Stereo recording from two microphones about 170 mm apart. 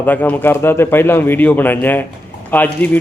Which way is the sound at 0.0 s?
10° left (ahead or behind).